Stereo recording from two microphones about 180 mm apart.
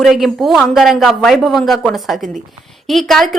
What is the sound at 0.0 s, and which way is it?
A woman's voice, centre (ahead or behind).